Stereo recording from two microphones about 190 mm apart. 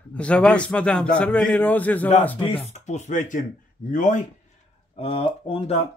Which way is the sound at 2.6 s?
35° left (ahead or behind).